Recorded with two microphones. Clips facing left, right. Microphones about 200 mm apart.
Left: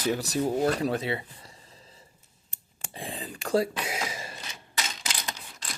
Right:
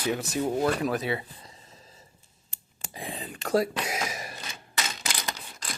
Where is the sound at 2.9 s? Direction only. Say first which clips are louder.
Even; 30° left (ahead or behind).